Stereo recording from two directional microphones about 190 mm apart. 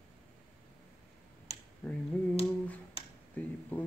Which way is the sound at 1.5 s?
35° left (ahead or behind).